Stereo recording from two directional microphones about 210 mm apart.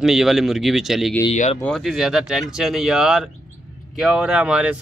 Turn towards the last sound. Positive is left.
turn(degrees=-5)  # may be behind; listen again after turning